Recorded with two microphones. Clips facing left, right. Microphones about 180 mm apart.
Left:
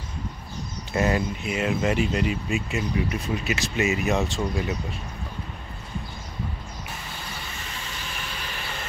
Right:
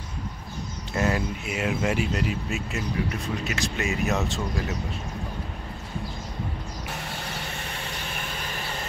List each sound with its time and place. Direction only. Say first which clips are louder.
0.9 s speech: left 2 dB; centre (ahead or behind)
7.0 s vehicle: right 3 dB; 65° right (ahead or behind)